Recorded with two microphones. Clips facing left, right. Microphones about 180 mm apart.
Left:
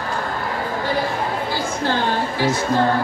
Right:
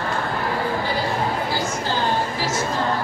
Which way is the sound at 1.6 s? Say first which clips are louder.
Left 2 dB; 55° left (ahead or behind).